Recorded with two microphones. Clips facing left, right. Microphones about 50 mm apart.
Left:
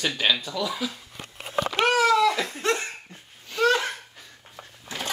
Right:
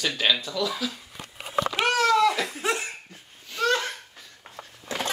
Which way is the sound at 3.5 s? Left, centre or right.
Centre.